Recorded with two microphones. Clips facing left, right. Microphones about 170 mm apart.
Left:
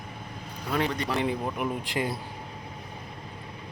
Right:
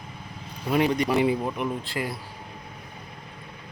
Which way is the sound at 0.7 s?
15° right (ahead or behind).